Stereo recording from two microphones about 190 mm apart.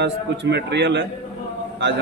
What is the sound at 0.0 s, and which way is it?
A man's voice, 65° right (ahead or behind).